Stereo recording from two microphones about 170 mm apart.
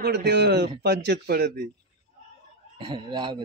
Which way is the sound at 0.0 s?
75° right (ahead or behind).